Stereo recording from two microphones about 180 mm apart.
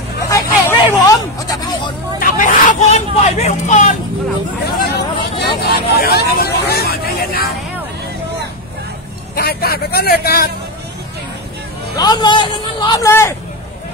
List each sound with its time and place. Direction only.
0.3 s a sound: 20° left (ahead or behind)
2.1 s vehicle: 50° left (ahead or behind)
4.6 s hubbub: 60° left (ahead or behind)
5.6 s vehicle: 60° left (ahead or behind)
9.3 s vehicle: 60° left (ahead or behind)
12.0 s a man's voice: 25° left (ahead or behind)